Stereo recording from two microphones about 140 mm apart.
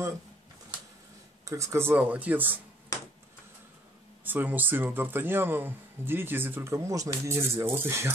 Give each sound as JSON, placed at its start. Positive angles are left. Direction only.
{"t": 1.4, "sound": "speech", "side_deg": -20}
{"t": 4.2, "sound": "speech", "side_deg": -15}